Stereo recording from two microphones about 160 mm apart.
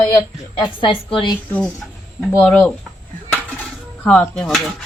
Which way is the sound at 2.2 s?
5° left (ahead or behind).